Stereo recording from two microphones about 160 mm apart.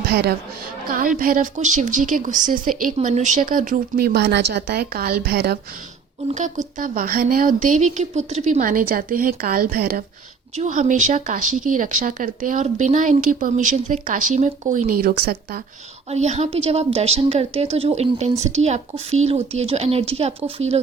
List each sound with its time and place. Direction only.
0.0 s a woman's voice: 85° right
0.9 s speech: 60° right (ahead or behind); by 5.5 s 90° right
6.7 s speech: 60° right (ahead or behind)
10.5 s speech: 50° right (ahead or behind); by 15.6 s 75° right (ahead or behind)
16.0 s a woman's voice: 45° right (ahead or behind)